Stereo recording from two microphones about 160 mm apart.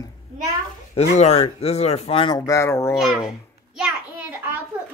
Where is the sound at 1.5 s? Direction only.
40° left (ahead or behind).